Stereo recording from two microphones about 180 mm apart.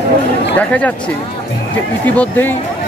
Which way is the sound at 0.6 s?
10° left (ahead or behind).